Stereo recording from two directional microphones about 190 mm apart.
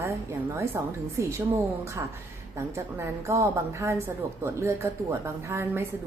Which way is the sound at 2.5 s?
15° right (ahead or behind).